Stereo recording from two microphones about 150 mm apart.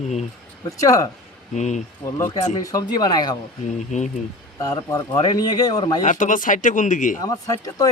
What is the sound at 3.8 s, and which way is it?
Speech, 55° left (ahead or behind).